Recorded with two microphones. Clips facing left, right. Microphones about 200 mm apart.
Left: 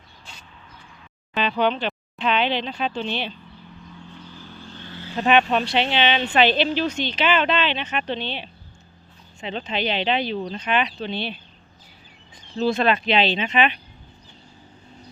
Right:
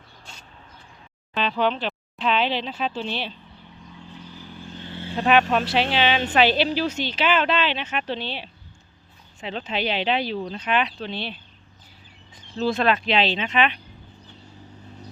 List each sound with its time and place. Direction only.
1.3 s speech: centre (ahead or behind)
4.4 s vehicle: 15° right (ahead or behind)
5.1 s speech: centre (ahead or behind)
12.5 s speech: centre (ahead or behind)